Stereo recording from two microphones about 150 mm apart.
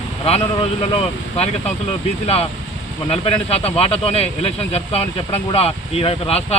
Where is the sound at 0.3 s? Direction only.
45° left (ahead or behind).